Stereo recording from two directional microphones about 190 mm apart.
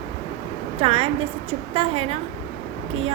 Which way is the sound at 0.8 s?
30° right (ahead or behind).